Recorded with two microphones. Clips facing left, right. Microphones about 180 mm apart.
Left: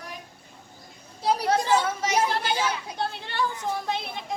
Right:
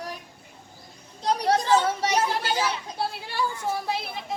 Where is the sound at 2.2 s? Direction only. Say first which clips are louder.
Even; 10° right (ahead or behind).